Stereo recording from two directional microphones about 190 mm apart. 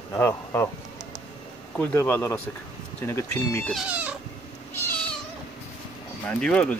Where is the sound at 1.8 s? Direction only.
10° left (ahead or behind).